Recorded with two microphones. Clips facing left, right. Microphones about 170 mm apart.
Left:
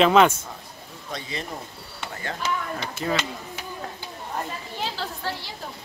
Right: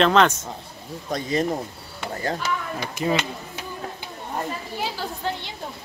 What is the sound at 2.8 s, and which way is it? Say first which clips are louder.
Speech: right 5 dB; 15° right (ahead or behind).